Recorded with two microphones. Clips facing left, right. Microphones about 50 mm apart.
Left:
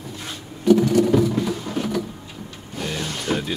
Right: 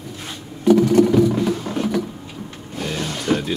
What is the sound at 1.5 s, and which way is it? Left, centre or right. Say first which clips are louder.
Music: right 4 dB; centre.